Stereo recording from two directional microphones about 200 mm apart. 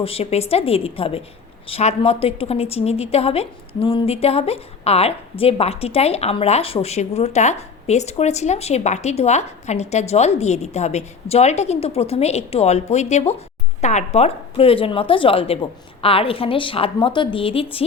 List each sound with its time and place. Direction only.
0.0 s a woman's voice: 30° left (ahead or behind)